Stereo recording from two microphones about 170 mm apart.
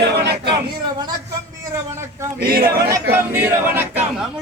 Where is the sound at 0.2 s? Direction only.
80° right.